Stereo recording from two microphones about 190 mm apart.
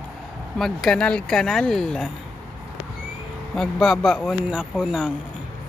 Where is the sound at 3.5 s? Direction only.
5° left (ahead or behind).